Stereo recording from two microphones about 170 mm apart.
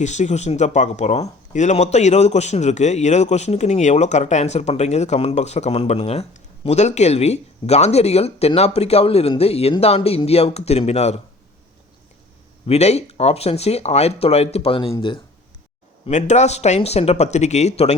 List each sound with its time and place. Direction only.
0.0 s speech: 45° left (ahead or behind)
12.6 s speech: 40° left (ahead or behind)
16.0 s speech: 40° left (ahead or behind)